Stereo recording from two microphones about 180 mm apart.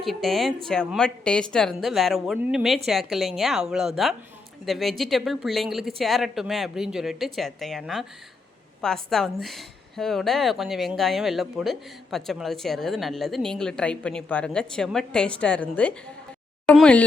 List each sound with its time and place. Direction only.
0.0 s a woman's voice: centre (ahead or behind)